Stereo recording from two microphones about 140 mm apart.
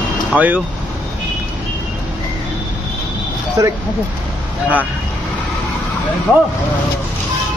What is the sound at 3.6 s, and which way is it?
Speech, 25° right (ahead or behind).